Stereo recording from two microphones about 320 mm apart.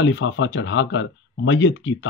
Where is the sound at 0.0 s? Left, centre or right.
Left.